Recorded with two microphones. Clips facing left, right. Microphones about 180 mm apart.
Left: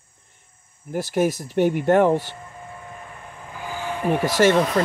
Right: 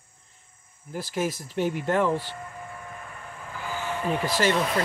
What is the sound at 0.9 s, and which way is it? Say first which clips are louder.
Speech: left 7 dB; 70° left (ahead or behind).